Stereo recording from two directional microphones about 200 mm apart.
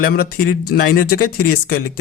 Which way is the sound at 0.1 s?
50° left (ahead or behind).